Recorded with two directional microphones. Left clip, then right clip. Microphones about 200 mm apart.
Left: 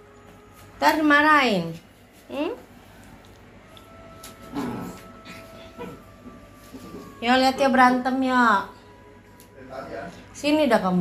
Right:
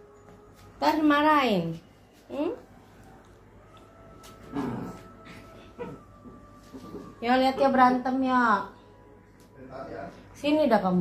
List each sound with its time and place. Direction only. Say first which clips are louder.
0.7 s a woman's voice: left 5 dB; 10° left (ahead or behind)
7.2 s a woman's voice: left 4 dB; 5° left (ahead or behind); by 8.5 s 20° left (ahead or behind)
10.3 s a woman's voice: left 3 dB; 10° left (ahead or behind)